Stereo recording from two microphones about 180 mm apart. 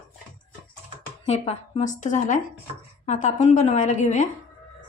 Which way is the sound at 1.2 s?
35° left (ahead or behind).